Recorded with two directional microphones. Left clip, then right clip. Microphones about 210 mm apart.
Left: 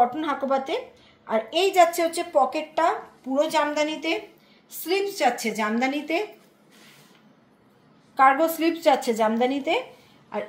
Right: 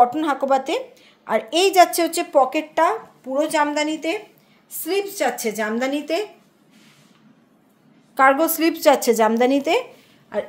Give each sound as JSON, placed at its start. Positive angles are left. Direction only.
{"t": 0.0, "sound": "a woman's voice", "side_deg": -55}
{"t": 8.2, "sound": "a woman's voice", "side_deg": -40}